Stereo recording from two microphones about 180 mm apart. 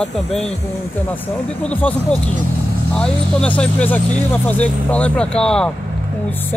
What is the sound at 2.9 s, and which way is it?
Speech, 5° left (ahead or behind).